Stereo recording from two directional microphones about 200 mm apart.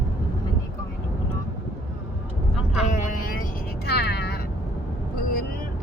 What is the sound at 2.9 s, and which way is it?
Vehicle, 40° left (ahead or behind).